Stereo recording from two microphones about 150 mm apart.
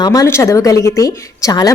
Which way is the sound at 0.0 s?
25° left (ahead or behind).